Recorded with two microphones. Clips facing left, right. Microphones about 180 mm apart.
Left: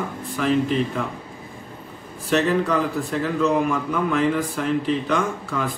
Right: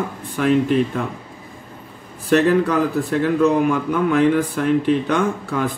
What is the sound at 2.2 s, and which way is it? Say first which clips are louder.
Speech: right 5 dB; 55° right (ahead or behind).